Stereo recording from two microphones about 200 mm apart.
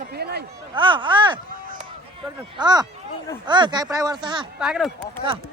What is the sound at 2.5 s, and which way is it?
Speech, 20° right (ahead or behind).